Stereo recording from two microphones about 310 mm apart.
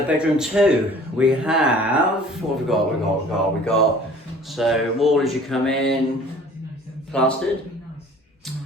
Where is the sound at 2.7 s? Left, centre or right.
Centre.